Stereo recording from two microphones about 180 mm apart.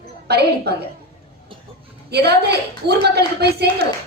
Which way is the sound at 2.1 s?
65° right (ahead or behind).